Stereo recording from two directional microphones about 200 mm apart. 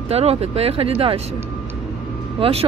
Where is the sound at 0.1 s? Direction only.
30° right (ahead or behind).